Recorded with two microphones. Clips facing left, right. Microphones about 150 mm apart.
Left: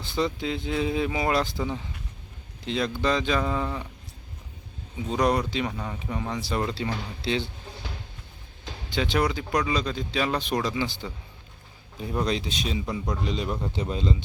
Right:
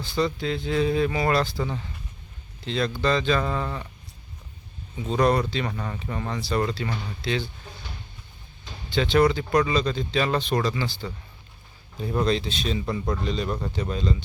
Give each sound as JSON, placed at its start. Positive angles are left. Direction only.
{"t": 0.0, "sound": "speech", "side_deg": 20}
{"t": 5.0, "sound": "speech", "side_deg": 10}
{"t": 8.9, "sound": "speech", "side_deg": 10}
{"t": 12.2, "sound": "speech", "side_deg": 15}
{"t": 12.8, "sound": "speech", "side_deg": 0}
{"t": 13.2, "sound": "speech", "side_deg": 15}